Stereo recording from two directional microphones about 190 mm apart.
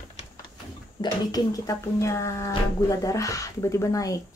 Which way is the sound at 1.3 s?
20° left (ahead or behind).